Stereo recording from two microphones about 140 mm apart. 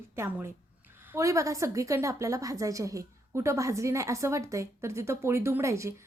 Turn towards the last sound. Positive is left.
turn(degrees=-20)  # may be behind; listen again after turning